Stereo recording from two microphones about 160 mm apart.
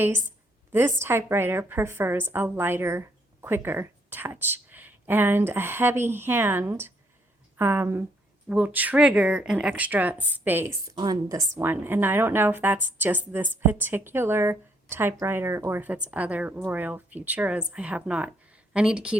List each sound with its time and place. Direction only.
0.7 s speech: 15° right (ahead or behind)